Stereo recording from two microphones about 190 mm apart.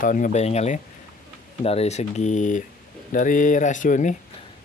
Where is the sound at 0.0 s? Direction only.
45° left (ahead or behind).